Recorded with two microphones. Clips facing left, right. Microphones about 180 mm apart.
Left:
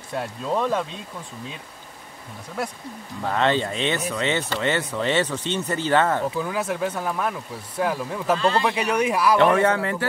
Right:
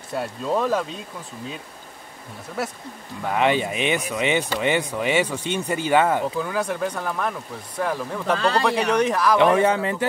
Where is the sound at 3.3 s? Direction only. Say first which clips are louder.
Right 1 dB; 15° right (ahead or behind).